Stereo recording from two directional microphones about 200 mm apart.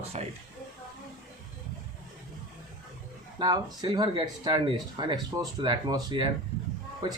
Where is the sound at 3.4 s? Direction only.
20° right (ahead or behind).